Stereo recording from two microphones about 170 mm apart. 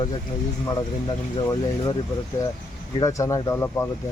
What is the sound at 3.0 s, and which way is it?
Speech, 20° left (ahead or behind).